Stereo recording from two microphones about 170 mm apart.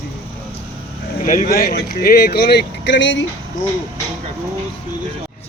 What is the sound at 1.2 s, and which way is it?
Speech, 50° left (ahead or behind).